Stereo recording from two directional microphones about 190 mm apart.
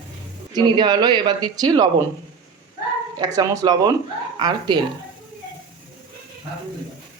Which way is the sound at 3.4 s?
20° right (ahead or behind).